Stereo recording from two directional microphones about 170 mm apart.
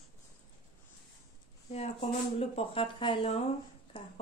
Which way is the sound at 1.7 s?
40° left (ahead or behind).